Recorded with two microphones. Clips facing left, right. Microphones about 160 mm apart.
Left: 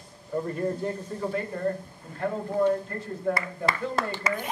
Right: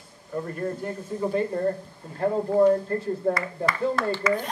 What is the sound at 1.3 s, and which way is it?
Speech, 25° right (ahead or behind).